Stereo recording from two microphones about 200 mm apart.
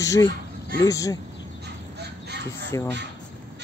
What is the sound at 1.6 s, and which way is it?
Bird, 55° right (ahead or behind).